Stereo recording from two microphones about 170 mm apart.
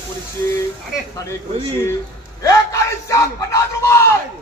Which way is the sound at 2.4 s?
20° left (ahead or behind).